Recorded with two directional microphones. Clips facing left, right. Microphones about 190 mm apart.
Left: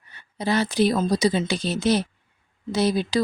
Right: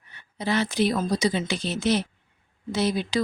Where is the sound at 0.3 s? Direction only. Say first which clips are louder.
Left 3 dB; 35° left (ahead or behind).